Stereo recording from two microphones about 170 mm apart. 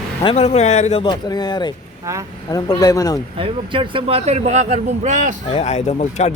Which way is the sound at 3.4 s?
30° right (ahead or behind).